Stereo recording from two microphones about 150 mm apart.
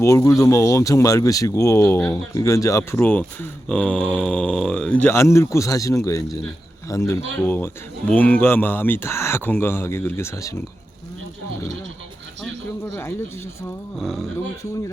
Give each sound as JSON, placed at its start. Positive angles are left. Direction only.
{"t": 0.0, "sound": "speech", "side_deg": 20}
{"t": 12.4, "sound": "a sound", "side_deg": 15}
{"t": 14.0, "sound": "speech", "side_deg": 0}